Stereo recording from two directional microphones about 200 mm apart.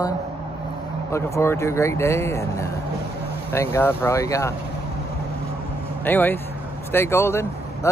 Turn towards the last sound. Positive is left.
turn(degrees=15)  # may be behind; listen again after turning